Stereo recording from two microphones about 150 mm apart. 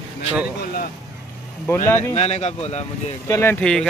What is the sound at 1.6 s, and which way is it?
Speech, 15° left (ahead or behind).